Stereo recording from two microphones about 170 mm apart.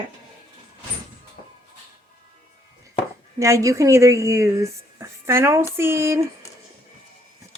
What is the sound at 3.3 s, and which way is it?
A woman's voice, 20° right (ahead or behind).